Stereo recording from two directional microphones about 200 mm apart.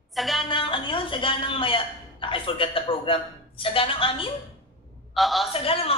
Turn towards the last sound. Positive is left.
turn(degrees=30)  # may be behind; listen again after turning